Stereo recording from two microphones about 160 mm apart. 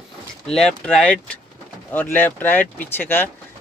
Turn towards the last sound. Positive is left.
turn(degrees=10)  # may be behind; listen again after turning